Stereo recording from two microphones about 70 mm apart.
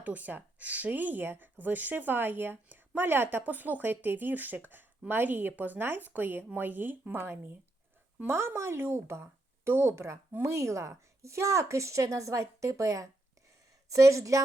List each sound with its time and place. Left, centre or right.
0.0 s speech: right